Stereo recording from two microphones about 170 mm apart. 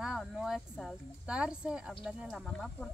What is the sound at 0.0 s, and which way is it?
Speech, 5° right (ahead or behind).